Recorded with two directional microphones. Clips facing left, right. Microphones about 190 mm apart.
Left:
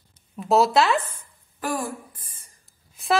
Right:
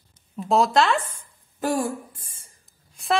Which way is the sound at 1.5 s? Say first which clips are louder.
Right 4 dB; 25° right (ahead or behind).